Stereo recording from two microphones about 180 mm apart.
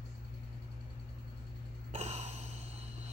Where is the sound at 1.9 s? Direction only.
40° right (ahead or behind).